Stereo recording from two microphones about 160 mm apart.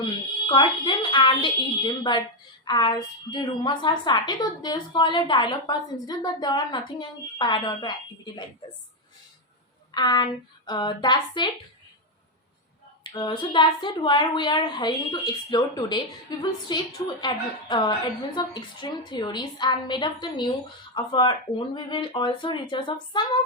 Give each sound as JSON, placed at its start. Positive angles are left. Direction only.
{"t": 0.0, "sound": "a woman's voice", "side_deg": 30}
{"t": 9.9, "sound": "a woman's voice", "side_deg": 25}
{"t": 13.0, "sound": "a woman's voice", "side_deg": 30}